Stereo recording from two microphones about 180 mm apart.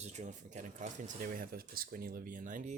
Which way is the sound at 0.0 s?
40° right (ahead or behind).